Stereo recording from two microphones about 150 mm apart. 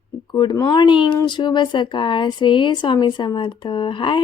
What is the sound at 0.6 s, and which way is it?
Speech, 30° left (ahead or behind).